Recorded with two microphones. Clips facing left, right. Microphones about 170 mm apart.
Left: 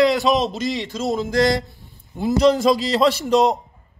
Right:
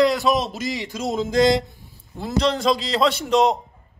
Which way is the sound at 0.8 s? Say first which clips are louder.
Left 2 dB; 20° right (ahead or behind).